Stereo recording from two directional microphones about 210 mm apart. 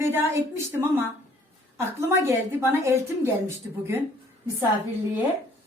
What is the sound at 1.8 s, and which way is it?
A woman's voice, 15° right (ahead or behind).